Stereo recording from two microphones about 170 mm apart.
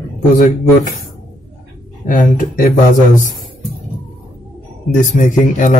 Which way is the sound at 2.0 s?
50° left (ahead or behind).